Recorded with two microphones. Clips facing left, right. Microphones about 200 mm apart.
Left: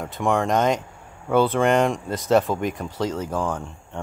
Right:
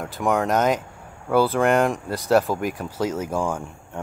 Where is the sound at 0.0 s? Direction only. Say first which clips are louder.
Even; centre (ahead or behind).